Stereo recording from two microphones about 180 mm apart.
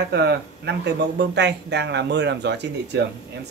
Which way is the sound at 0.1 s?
65° right (ahead or behind).